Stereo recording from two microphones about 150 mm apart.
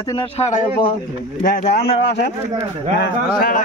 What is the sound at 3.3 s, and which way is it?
Speech, 80° left.